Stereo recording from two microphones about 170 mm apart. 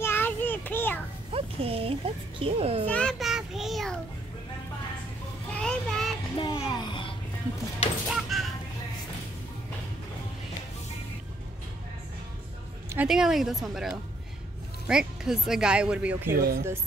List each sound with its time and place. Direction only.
0.0 s child singing: 10° left (ahead or behind)
1.3 s speech: 35° right (ahead or behind)
2.9 s child singing: 5° left (ahead or behind)
5.5 s child singing: 5° left (ahead or behind)
6.4 s music: 25° left (ahead or behind)
8.1 s a sound: centre (ahead or behind)
12.9 s speech: 5° right (ahead or behind)
16.3 s speech: 65° right (ahead or behind)